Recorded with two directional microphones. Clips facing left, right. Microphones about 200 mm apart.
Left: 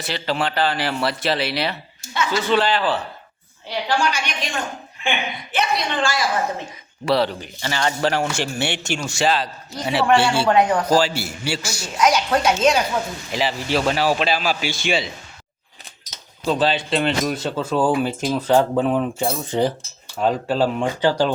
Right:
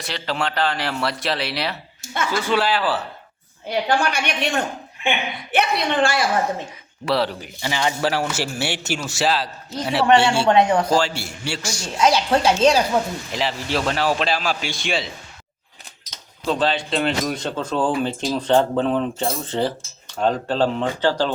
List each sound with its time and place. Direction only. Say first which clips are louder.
0.0 s speech: left 2 dB; centre (ahead or behind)
2.1 s speech: left 1 dB; 50° right (ahead or behind)
2.4 s speech: left 1 dB; 10° right (ahead or behind)
3.7 s a woman's voice: right 1 dB; 55° right (ahead or behind)
7.0 s speech: left 2 dB; centre (ahead or behind)
10.4 s a woman's voice: right 1 dB; 25° right (ahead or behind)
10.8 s speech: left 2 dB; 5° left (ahead or behind)
11.9 s a woman's voice: even; 30° right (ahead or behind)
13.3 s speech: left 3 dB; centre (ahead or behind)